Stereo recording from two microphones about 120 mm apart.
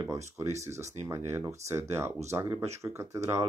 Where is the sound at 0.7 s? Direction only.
70° right (ahead or behind).